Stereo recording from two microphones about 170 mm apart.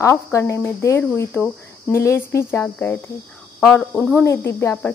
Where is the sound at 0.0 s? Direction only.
15° left (ahead or behind).